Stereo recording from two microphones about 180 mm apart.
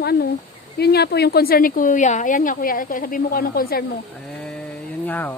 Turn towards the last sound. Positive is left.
turn(degrees=10)  # may be behind; listen again after turning